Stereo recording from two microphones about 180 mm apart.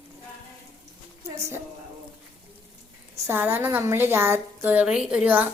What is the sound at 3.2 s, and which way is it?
A woman's voice, 10° right (ahead or behind).